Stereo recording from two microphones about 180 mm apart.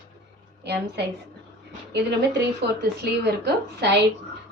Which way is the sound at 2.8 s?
65° right (ahead or behind).